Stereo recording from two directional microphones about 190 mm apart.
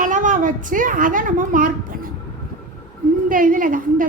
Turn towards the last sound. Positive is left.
turn(degrees=-45)  # may be behind; listen again after turning